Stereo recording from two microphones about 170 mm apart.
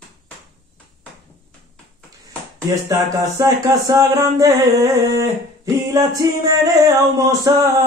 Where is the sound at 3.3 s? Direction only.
20° right (ahead or behind).